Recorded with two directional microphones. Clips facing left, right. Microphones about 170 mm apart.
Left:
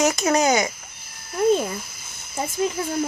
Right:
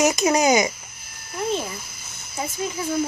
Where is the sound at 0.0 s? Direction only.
15° right (ahead or behind).